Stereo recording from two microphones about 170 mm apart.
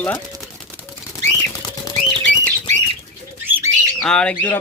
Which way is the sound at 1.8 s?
20° left (ahead or behind).